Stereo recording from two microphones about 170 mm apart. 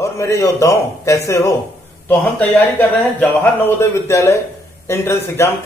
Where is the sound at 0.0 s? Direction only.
15° left (ahead or behind).